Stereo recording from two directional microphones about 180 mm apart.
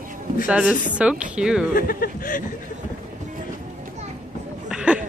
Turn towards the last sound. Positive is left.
turn(degrees=-5)  # may be behind; listen again after turning